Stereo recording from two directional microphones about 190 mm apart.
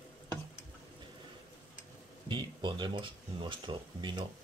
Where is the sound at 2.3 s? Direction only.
25° right (ahead or behind).